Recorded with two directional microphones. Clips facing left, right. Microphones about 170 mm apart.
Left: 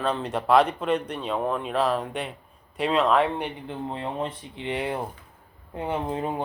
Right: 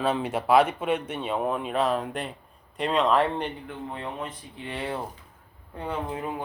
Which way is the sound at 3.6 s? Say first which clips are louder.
Left 3 dB; 30° left (ahead or behind).